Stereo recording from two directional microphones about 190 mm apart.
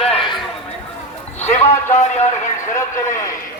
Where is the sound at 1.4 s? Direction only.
35° left (ahead or behind).